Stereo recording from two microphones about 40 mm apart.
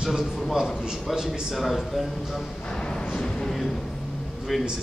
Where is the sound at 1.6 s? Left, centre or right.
Centre.